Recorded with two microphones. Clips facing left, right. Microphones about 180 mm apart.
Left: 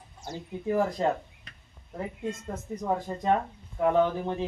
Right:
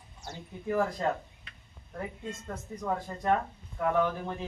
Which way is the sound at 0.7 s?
15° left (ahead or behind).